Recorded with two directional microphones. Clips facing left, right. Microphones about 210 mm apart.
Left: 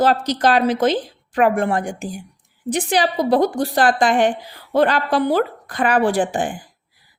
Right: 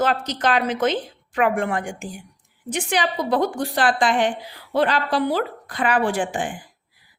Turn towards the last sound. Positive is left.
turn(degrees=40)  # may be behind; listen again after turning